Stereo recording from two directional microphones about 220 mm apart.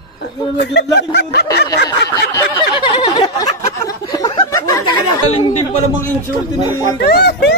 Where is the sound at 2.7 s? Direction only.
20° left (ahead or behind).